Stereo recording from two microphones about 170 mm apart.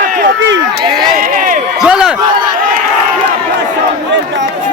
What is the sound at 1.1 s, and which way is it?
Crowd, 55° right (ahead or behind).